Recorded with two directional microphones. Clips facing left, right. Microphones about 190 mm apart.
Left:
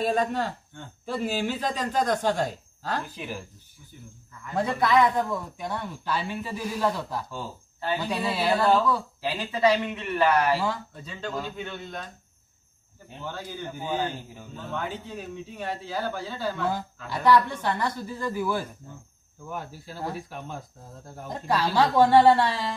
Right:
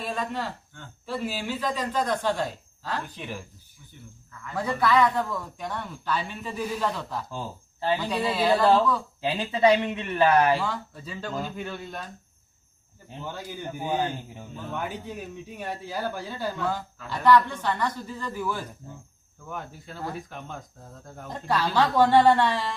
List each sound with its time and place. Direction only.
0.0 s speech: 45° left (ahead or behind)
3.2 s speech: 5° left (ahead or behind)
4.6 s a man's voice: 20° left (ahead or behind)
9.2 s speech: 25° right (ahead or behind)
11.1 s speech: 5° right (ahead or behind)
13.2 s speech: 15° right (ahead or behind)
16.6 s speech: 10° left (ahead or behind)